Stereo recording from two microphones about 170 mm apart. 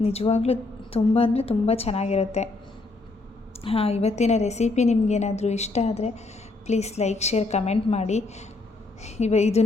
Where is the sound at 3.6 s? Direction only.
35° left (ahead or behind).